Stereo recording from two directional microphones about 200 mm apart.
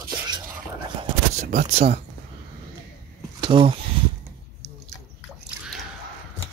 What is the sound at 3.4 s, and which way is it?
Speech, 25° right (ahead or behind).